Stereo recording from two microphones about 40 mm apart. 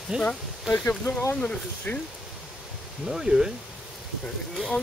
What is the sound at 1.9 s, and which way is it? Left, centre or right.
Speech, left.